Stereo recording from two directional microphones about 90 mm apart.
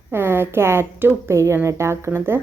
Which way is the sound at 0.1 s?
25° right (ahead or behind).